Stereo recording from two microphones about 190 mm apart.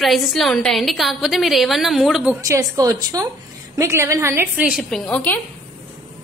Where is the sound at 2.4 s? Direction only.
15° right (ahead or behind); by 5.4 s 10° left (ahead or behind).